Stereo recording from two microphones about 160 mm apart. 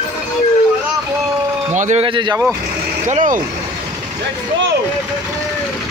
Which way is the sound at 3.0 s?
50° right (ahead or behind).